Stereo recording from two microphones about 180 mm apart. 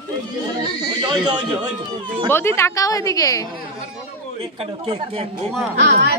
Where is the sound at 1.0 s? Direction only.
25° right (ahead or behind).